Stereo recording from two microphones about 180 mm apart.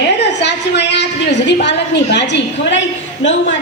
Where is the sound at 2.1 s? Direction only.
75° left (ahead or behind).